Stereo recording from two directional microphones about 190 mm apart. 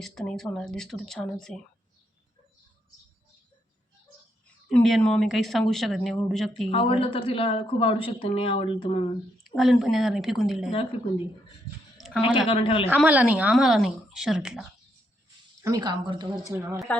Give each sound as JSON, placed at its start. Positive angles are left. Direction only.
{"t": 0.0, "sound": "speech", "side_deg": 5}
{"t": 4.7, "sound": "speech", "side_deg": 0}
{"t": 6.7, "sound": "speech", "side_deg": 30}
{"t": 9.6, "sound": "speech", "side_deg": 0}
{"t": 10.7, "sound": "speech", "side_deg": 30}
{"t": 11.9, "sound": "a sound", "side_deg": 0}
{"t": 12.5, "sound": "speech", "side_deg": 30}
{"t": 13.0, "sound": "speech", "side_deg": -10}
{"t": 15.6, "sound": "speech", "side_deg": -20}
{"t": 16.7, "sound": "speech", "side_deg": 0}